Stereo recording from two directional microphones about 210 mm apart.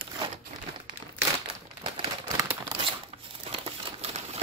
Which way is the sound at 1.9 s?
15° right (ahead or behind).